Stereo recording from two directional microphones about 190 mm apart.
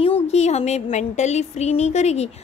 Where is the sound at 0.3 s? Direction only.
35° left (ahead or behind).